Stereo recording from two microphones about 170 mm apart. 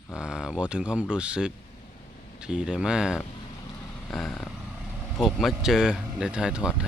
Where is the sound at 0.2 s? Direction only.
5° right (ahead or behind).